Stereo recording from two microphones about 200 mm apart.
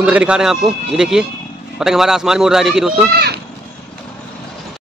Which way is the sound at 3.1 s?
50° right (ahead or behind).